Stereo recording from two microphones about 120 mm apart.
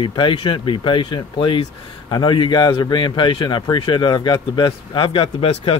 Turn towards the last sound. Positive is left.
turn(degrees=50)  # may be behind; listen again after turning